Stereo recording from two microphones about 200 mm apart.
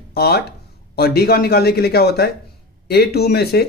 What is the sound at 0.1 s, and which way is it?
Speech, 55° left (ahead or behind).